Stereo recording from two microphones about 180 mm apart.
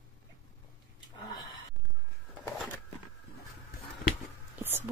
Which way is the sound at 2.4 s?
10° left (ahead or behind).